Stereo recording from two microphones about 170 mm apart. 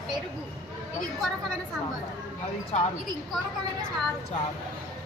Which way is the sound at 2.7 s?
40° left (ahead or behind).